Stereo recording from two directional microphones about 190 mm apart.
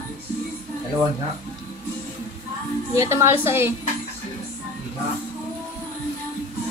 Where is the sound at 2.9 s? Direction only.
15° right (ahead or behind).